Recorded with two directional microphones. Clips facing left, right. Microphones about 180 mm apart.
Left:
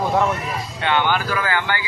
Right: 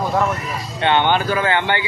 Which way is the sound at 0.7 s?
25° right (ahead or behind).